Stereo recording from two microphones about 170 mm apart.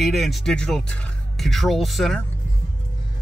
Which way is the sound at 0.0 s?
Centre (ahead or behind).